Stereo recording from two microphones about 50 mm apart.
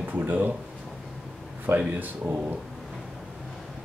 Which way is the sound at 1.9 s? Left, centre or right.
Right.